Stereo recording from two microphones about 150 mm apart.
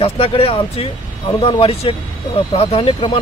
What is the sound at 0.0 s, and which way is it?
Speech, 40° left (ahead or behind).